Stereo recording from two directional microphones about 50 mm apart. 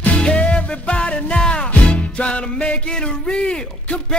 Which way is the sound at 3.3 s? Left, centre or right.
Centre.